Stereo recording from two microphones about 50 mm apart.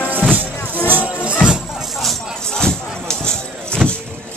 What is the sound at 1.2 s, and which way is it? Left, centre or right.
Music, right.